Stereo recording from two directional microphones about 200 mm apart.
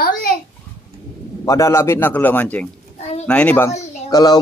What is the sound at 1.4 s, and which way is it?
A man's voice, 15° left (ahead or behind).